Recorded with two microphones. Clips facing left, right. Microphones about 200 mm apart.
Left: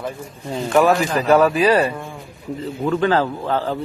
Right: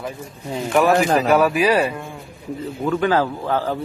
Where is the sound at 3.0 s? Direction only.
10° right (ahead or behind).